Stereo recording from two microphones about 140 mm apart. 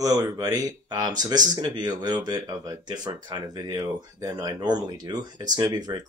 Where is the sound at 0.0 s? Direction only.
25° right (ahead or behind).